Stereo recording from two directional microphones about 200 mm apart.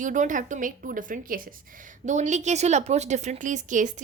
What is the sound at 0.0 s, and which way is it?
A woman's voice, 40° right (ahead or behind).